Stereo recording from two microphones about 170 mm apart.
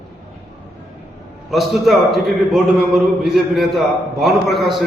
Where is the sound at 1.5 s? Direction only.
Centre (ahead or behind).